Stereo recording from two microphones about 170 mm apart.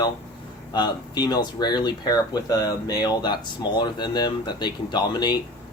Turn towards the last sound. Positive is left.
turn(degrees=25)  # may be behind; listen again after turning